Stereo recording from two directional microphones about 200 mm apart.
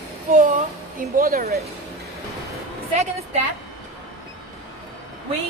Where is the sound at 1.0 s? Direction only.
45° right (ahead or behind).